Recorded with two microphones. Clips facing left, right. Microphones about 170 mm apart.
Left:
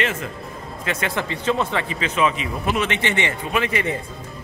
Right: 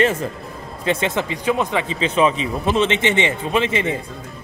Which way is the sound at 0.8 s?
20° right (ahead or behind).